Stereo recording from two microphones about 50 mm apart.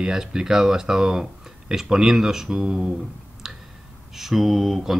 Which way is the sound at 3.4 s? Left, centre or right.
Centre.